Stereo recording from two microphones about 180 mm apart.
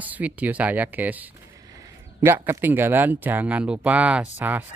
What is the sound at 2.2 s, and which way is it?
Speech, 10° right (ahead or behind).